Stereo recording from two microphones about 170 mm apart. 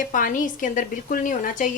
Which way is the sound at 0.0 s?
50° left (ahead or behind).